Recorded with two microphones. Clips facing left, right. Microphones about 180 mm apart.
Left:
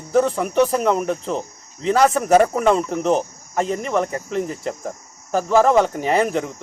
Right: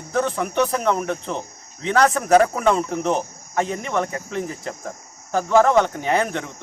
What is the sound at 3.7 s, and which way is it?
Speech, 30° left (ahead or behind).